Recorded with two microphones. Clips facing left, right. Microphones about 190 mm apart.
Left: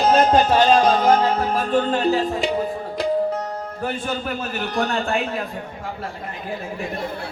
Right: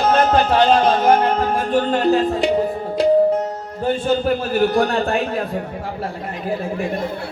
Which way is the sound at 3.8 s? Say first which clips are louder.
Right 9 dB; 30° right (ahead or behind).